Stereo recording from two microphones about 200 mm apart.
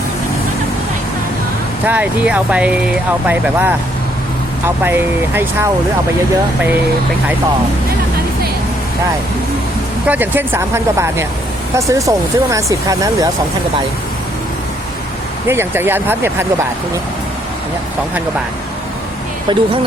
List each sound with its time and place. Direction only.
1.9 s speech: 5° right (ahead or behind)
10.1 s speech: 10° right (ahead or behind)
15.4 s speech: 10° right (ahead or behind)
19.5 s speech: 20° right (ahead or behind)